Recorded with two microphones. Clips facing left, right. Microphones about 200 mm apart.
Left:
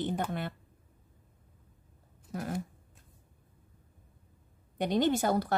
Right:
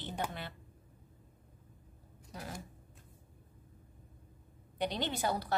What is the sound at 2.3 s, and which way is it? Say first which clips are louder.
Speech: left 10 dB; 55° left (ahead or behind).